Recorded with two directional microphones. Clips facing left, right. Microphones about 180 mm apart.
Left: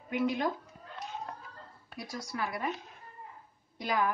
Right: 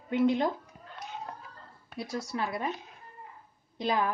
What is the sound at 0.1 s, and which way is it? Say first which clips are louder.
Speech: right 5 dB; 25° right (ahead or behind).